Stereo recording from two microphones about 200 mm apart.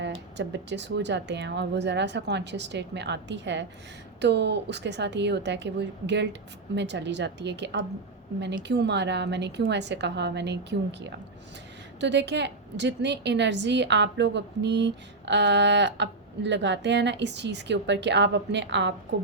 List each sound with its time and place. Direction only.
0.0 s a woman's voice: 60° right (ahead or behind)